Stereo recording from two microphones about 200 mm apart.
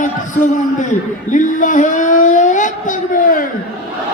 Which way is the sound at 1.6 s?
40° left (ahead or behind).